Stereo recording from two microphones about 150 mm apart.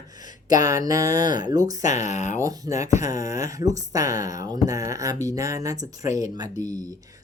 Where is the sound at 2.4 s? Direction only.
20° right (ahead or behind).